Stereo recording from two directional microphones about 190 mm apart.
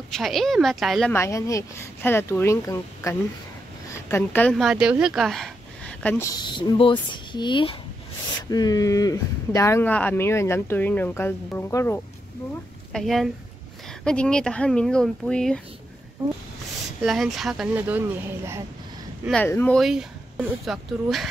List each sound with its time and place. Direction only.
0.1 s speech: centre (ahead or behind)
1.1 s speech: 15° left (ahead or behind)
6.3 s speech: 20° left (ahead or behind)
12.9 s speech: centre (ahead or behind)
17.0 s speech: centre (ahead or behind)
19.2 s speech: 5° left (ahead or behind)